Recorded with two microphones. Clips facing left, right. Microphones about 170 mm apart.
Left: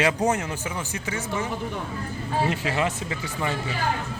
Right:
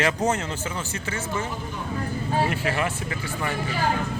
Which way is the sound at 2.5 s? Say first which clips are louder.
Even; 20° left (ahead or behind).